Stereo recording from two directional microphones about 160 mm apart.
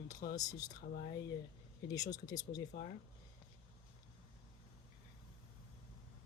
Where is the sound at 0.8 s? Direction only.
60° left (ahead or behind).